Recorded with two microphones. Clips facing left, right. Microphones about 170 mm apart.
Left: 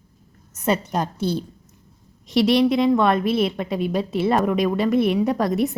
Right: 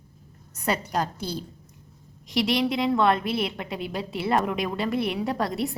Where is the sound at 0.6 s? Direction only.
20° left (ahead or behind).